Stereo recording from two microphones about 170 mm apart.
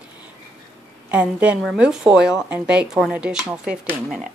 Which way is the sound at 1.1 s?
10° right (ahead or behind).